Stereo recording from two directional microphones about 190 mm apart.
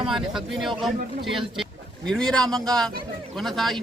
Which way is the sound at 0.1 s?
Centre (ahead or behind).